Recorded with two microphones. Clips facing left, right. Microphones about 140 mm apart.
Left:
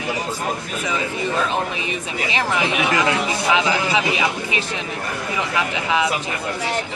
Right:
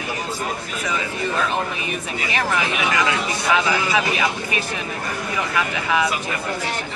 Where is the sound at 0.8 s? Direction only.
20° left (ahead or behind).